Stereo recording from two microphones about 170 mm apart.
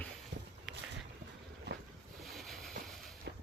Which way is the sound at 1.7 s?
80° right.